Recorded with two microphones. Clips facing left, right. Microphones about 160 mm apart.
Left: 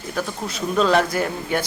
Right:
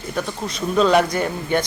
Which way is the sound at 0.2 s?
Centre (ahead or behind).